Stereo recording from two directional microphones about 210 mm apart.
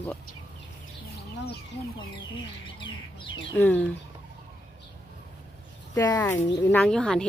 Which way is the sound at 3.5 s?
10° left (ahead or behind).